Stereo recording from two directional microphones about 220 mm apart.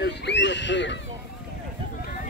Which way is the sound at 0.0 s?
50° left (ahead or behind).